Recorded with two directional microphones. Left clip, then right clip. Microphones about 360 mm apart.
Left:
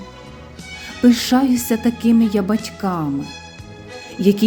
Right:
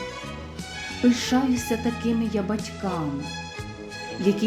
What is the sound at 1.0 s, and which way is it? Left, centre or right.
Speech, left.